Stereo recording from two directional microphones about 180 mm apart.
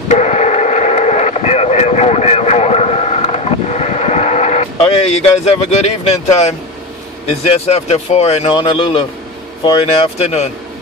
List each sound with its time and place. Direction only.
0.1 s radio: 40° left (ahead or behind)
7.2 s speech: 35° left (ahead or behind)